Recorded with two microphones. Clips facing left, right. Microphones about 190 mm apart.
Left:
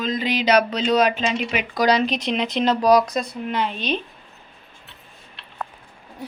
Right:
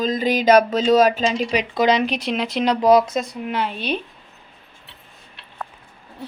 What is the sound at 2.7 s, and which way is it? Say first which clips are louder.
Speech: right 3 dB; 25° right (ahead or behind).